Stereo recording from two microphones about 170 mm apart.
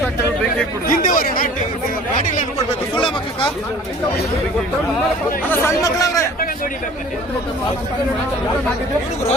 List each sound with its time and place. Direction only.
0.9 s chatter: 55° left (ahead or behind)
5.5 s speech: 15° left (ahead or behind)